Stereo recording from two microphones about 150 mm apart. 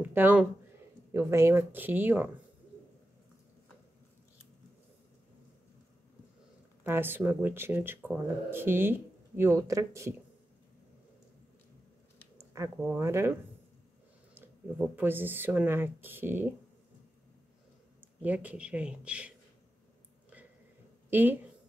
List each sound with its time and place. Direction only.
0.0 s speech: 10° right (ahead or behind)
6.8 s speech: 15° right (ahead or behind)
12.5 s speech: 15° right (ahead or behind)
18.2 s speech: 10° right (ahead or behind)
21.1 s speech: 15° right (ahead or behind)